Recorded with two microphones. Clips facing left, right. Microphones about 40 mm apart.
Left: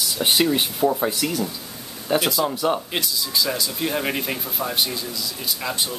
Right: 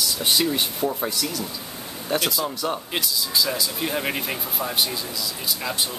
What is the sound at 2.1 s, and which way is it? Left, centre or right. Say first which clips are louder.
Speech: left 4 dB; centre.